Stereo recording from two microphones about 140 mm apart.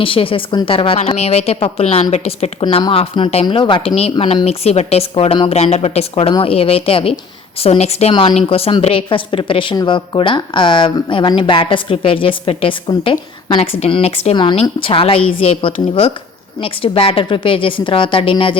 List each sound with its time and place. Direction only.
0.0 s a woman's voice: 40° left (ahead or behind)
0.9 s a woman's voice: 50° left (ahead or behind)
13.6 s a woman's voice: 45° left (ahead or behind)